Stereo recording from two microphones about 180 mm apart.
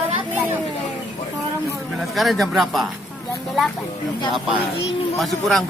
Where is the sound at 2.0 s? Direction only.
Centre (ahead or behind).